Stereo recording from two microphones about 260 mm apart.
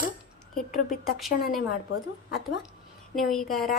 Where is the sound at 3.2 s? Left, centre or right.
Centre.